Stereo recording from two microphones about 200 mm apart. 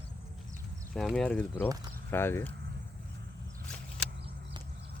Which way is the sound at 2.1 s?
10° left (ahead or behind).